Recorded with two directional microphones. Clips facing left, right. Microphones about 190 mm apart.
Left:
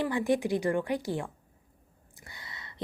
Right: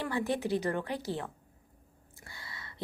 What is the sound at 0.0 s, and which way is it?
A woman's voice, 15° left (ahead or behind).